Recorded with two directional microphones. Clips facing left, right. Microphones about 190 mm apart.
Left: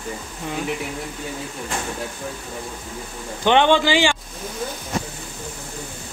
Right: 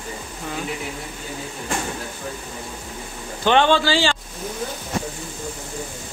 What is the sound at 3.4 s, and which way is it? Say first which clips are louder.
Speech: left 1 dB; 15° left (ahead or behind).